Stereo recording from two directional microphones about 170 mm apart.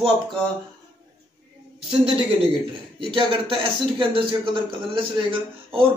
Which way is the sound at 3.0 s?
30° right (ahead or behind).